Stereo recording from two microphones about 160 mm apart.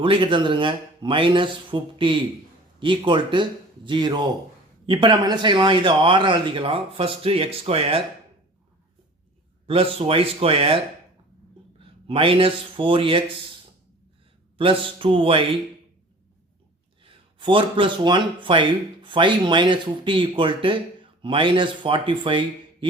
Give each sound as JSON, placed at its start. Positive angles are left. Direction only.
{"t": 0.0, "sound": "speech", "side_deg": -30}
{"t": 9.6, "sound": "speech", "side_deg": -35}
{"t": 11.8, "sound": "a man's voice", "side_deg": -35}
{"t": 14.6, "sound": "speech", "side_deg": -35}
{"t": 17.0, "sound": "speech", "side_deg": -35}